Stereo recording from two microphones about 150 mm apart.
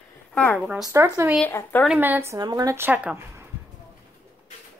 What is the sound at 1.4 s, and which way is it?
Speech, 15° left (ahead or behind).